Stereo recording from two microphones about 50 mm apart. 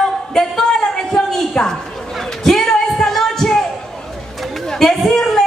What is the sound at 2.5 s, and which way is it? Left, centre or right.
Singing, centre.